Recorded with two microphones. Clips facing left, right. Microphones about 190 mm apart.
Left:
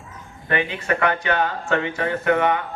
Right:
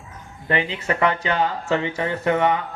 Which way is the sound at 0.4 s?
25° right (ahead or behind).